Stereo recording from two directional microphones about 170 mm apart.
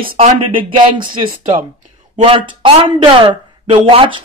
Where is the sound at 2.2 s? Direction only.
30° right (ahead or behind).